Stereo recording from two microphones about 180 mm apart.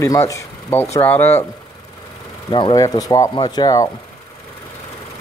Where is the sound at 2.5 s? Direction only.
25° left (ahead or behind).